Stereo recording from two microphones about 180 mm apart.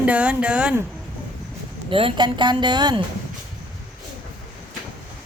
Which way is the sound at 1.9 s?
30° right (ahead or behind).